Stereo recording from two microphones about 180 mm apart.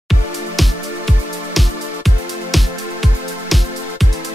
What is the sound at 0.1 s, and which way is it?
Music, centre (ahead or behind).